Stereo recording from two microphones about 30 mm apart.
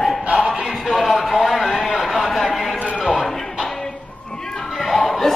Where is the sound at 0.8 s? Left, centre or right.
Centre.